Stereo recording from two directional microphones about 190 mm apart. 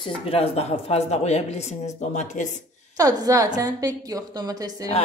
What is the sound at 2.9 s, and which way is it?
A woman's voice, 20° right (ahead or behind).